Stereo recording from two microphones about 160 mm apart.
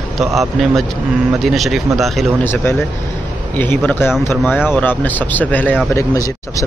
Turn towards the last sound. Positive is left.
turn(degrees=20)  # may be behind; listen again after turning